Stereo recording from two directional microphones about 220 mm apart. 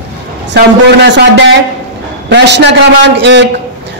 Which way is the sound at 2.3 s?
50° right (ahead or behind).